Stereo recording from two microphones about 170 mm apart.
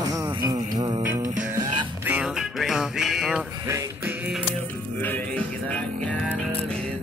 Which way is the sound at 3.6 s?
15° right (ahead or behind).